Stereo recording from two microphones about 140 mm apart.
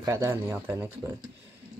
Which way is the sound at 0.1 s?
15° right (ahead or behind).